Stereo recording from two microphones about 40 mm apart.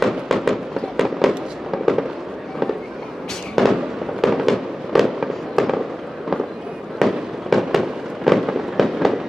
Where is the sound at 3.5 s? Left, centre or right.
Centre.